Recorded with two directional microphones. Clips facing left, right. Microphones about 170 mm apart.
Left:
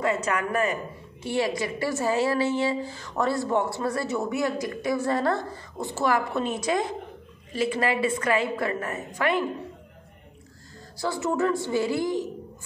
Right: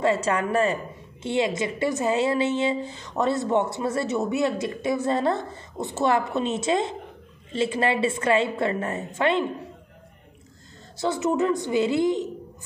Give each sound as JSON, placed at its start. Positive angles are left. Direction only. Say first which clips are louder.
{"t": 0.0, "sound": "a woman's voice", "louder": "right 3 dB", "side_deg": -30}
{"t": 11.0, "sound": "a woman's voice", "louder": "right 2 dB", "side_deg": -20}